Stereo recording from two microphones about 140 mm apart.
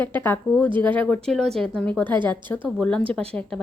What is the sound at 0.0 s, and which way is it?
A woman's voice, 15° left (ahead or behind).